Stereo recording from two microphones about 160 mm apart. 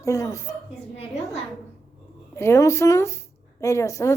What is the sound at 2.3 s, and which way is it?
A woman's voice, 15° left (ahead or behind).